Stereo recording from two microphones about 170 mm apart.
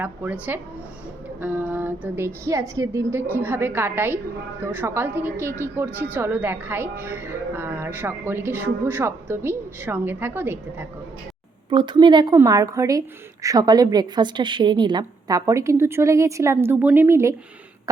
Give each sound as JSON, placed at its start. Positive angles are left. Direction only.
{"t": 0.0, "sound": "a woman's voice", "side_deg": -10}
{"t": 11.7, "sound": "a woman's voice", "side_deg": -30}